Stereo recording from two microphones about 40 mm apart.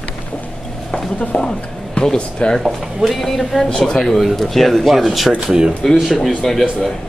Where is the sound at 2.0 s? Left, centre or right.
Centre.